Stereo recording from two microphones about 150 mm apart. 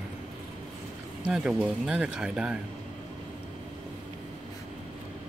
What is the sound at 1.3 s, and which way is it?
Speech, 5° right (ahead or behind).